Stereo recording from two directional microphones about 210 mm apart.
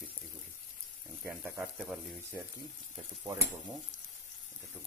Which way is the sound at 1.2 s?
5° right (ahead or behind).